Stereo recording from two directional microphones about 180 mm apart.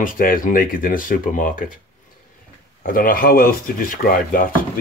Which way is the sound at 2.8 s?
50° left (ahead or behind).